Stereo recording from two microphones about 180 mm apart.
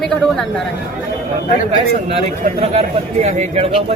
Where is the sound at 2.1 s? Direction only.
35° right (ahead or behind).